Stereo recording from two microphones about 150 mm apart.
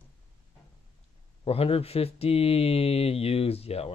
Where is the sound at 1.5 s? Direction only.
40° left (ahead or behind).